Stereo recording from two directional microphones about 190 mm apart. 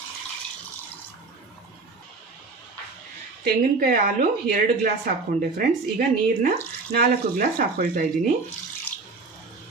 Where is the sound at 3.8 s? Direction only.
50° right (ahead or behind).